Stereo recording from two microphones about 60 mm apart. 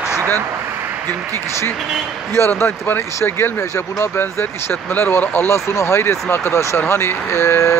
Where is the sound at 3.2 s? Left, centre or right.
Left.